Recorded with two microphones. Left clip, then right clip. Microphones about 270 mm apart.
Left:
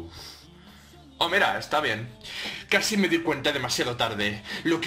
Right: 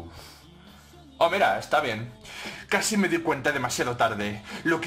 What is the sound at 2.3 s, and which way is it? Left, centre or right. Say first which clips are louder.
Speech: left 2 dB; centre.